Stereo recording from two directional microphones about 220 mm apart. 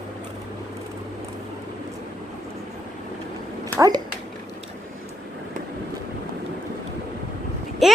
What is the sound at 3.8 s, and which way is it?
Speech, 20° right (ahead or behind).